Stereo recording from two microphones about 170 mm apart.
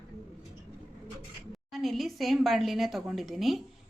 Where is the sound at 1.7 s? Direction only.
Centre (ahead or behind).